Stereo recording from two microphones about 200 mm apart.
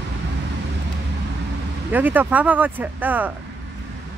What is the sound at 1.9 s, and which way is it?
Speech, 10° right (ahead or behind).